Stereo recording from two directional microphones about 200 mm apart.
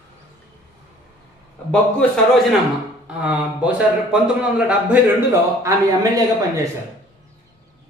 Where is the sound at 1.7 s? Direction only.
5° left (ahead or behind).